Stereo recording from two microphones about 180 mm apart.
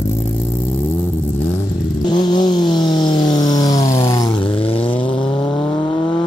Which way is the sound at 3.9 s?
15° left (ahead or behind).